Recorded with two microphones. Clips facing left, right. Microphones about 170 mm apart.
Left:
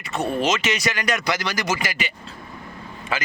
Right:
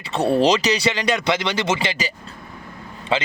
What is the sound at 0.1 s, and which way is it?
Speech, 30° right (ahead or behind).